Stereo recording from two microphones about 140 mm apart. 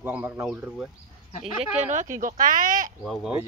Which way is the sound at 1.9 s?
65° right (ahead or behind).